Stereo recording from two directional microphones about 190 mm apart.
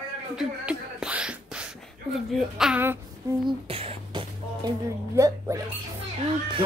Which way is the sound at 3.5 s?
30° right (ahead or behind).